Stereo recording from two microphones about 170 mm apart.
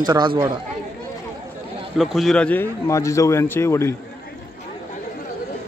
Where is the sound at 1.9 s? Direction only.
Centre (ahead or behind); by 4.0 s 15° left (ahead or behind).